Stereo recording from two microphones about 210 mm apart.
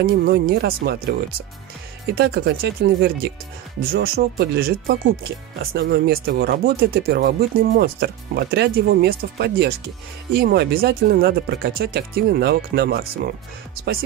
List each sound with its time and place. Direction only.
0.0 s speech: 45° right (ahead or behind)
2.1 s speech: 50° right (ahead or behind)